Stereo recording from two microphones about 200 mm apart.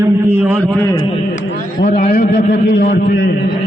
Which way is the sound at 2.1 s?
55° left (ahead or behind).